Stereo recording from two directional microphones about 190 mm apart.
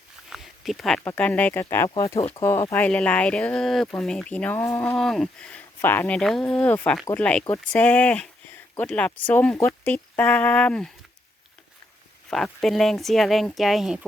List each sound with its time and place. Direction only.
0.3 s speech: centre (ahead or behind); by 2.1 s 20° left (ahead or behind)
2.1 s speech: 30° left (ahead or behind)
2.4 s speech: 15° left (ahead or behind)
12.3 s speech: centre (ahead or behind)